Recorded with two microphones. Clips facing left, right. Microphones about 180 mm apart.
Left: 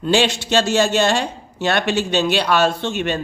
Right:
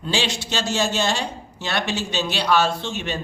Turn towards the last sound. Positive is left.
turn(degrees=60)  # may be behind; listen again after turning